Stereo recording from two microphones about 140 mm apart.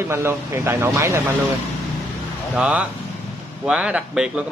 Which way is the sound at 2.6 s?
10° right (ahead or behind).